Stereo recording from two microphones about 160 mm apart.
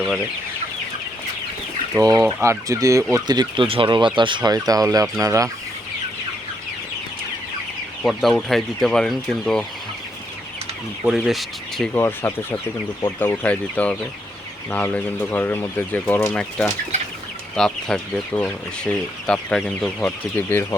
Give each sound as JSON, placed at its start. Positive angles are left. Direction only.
{"t": 2.0, "sound": "speech", "side_deg": -20}
{"t": 8.0, "sound": "speech", "side_deg": 0}
{"t": 11.0, "sound": "speech", "side_deg": 0}
{"t": 11.9, "sound": "speech", "side_deg": 15}